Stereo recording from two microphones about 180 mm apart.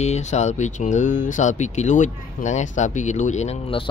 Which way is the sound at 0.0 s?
40° left (ahead or behind).